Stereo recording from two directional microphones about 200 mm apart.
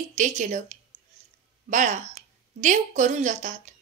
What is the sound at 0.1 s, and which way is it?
A woman's voice, 35° right (ahead or behind).